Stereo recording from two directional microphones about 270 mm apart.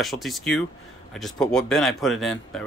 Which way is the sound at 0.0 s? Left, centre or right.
Centre.